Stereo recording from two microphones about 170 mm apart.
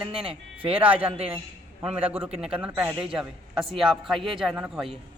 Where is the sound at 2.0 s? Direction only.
10° right (ahead or behind).